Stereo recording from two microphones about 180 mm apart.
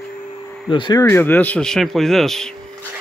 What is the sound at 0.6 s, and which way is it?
Speech, 25° left (ahead or behind).